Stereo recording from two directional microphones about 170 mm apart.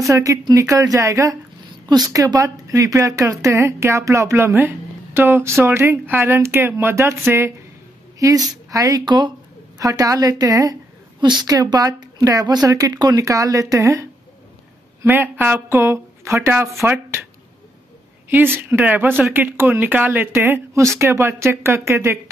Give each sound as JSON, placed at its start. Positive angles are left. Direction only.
{"t": 0.1, "sound": "a woman's voice", "side_deg": -20}
{"t": 18.3, "sound": "speech", "side_deg": -10}